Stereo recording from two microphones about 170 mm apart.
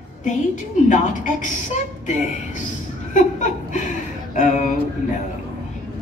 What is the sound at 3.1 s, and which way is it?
Speech, 50° left (ahead or behind).